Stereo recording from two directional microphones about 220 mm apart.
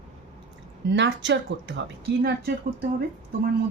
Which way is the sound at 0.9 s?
55° right (ahead or behind).